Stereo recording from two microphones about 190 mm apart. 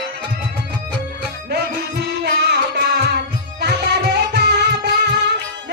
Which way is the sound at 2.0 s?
65° right (ahead or behind).